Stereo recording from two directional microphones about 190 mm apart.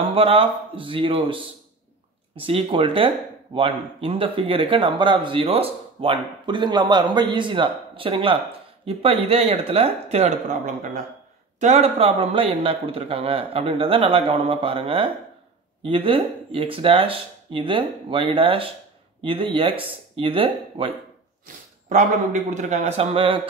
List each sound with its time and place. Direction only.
0.0 s speech: 30° right (ahead or behind)
21.8 s a man's voice: 40° right (ahead or behind)